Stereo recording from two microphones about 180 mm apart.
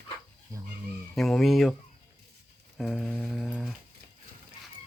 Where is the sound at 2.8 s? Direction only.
Centre (ahead or behind).